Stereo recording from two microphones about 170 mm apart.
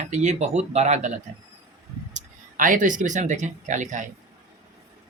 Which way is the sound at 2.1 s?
50° right (ahead or behind).